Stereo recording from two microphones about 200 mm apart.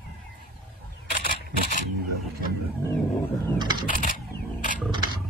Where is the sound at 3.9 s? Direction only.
40° left (ahead or behind).